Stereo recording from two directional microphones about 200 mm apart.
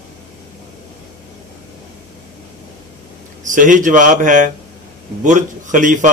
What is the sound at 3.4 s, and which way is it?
Speech, 40° right (ahead or behind).